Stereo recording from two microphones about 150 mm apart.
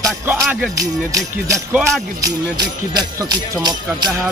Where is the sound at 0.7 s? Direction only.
20° right (ahead or behind).